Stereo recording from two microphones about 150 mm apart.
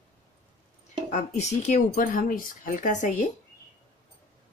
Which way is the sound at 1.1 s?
50° left (ahead or behind).